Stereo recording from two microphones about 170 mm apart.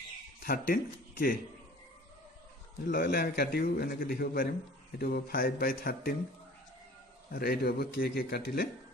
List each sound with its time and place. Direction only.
0.4 s speech: 55° left (ahead or behind)
2.8 s a man's voice: 60° left (ahead or behind)
7.3 s a man's voice: 65° left (ahead or behind)